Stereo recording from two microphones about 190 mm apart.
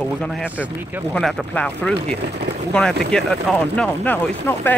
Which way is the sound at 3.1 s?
Centre (ahead or behind).